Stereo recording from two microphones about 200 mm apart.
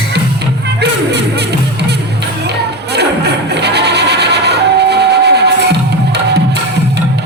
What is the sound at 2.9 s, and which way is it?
Music, 55° right (ahead or behind).